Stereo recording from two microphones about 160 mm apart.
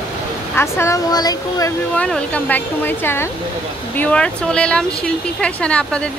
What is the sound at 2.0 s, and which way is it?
Speech, 5° left (ahead or behind).